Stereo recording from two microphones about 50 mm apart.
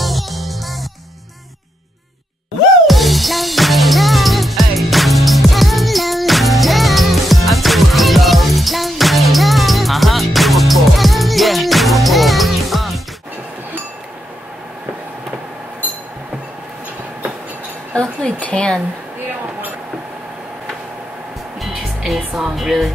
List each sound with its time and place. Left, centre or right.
0.0 s music: centre
2.9 s music: centre
18.2 s a sound: left
21.5 s music: centre